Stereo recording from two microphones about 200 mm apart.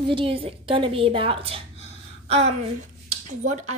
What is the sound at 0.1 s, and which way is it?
A woman's voice, 25° right (ahead or behind).